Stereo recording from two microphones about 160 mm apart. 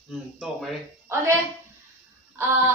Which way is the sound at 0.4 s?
Centre (ahead or behind).